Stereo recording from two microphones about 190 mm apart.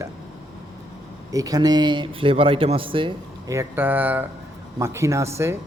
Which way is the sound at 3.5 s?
10° right (ahead or behind).